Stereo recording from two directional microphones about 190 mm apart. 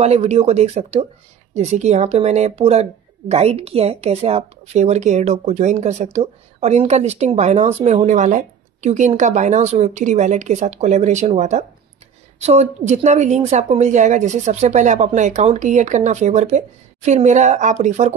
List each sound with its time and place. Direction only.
0.0 s a woman's voice: 35° right (ahead or behind)